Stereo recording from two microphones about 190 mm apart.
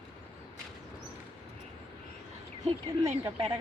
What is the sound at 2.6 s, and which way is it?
Speech, 35° right (ahead or behind).